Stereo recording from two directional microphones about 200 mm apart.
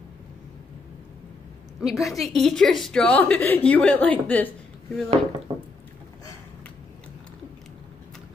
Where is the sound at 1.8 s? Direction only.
Centre (ahead or behind).